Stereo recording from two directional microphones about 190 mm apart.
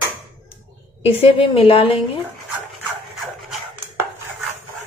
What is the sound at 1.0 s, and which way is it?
Speech, 30° left (ahead or behind).